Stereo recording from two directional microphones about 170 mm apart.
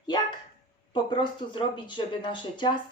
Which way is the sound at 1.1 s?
25° left (ahead or behind).